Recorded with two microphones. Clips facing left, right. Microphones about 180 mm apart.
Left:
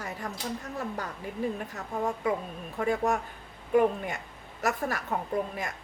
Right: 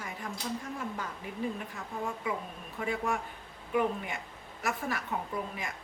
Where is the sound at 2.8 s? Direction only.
45° left (ahead or behind).